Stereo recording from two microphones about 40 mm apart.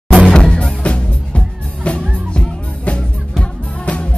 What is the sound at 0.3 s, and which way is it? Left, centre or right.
Music, left.